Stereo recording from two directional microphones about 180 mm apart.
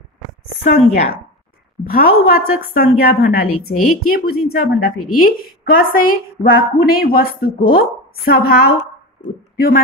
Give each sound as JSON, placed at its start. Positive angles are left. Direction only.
{"t": 0.7, "sound": "speech", "side_deg": 40}
{"t": 1.9, "sound": "a woman's voice", "side_deg": 55}